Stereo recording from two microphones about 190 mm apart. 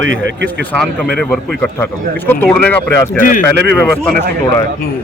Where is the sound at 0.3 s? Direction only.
65° right (ahead or behind).